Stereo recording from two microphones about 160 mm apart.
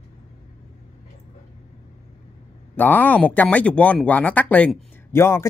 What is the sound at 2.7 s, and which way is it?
Speech, 10° left (ahead or behind).